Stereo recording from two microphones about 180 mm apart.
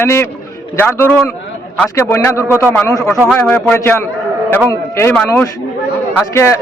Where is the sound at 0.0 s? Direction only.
15° left (ahead or behind).